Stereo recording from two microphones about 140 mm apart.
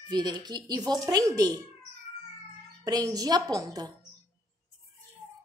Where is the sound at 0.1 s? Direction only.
30° right (ahead or behind).